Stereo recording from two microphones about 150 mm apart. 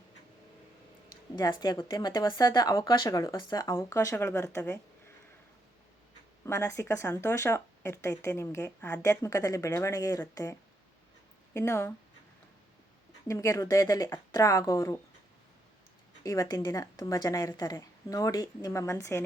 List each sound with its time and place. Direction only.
1.4 s speech: 30° left (ahead or behind)
6.4 s speech: 20° left (ahead or behind)
13.2 s speech: 20° left (ahead or behind)
16.2 s speech: 20° left (ahead or behind)